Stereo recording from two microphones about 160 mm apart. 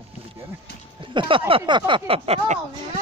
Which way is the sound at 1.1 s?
30° right (ahead or behind).